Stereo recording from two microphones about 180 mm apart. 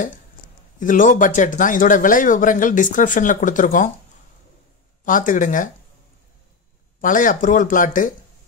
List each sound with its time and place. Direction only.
0.7 s speech: 45° left (ahead or behind)
5.0 s speech: 45° left (ahead or behind)
7.0 s speech: 45° left (ahead or behind)